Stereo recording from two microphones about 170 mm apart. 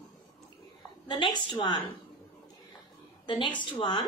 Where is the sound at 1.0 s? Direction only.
25° left (ahead or behind).